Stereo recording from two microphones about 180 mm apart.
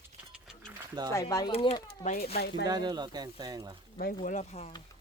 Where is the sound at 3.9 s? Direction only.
45° left (ahead or behind).